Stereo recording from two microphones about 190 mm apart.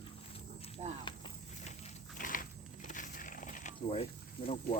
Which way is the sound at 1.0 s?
25° left (ahead or behind).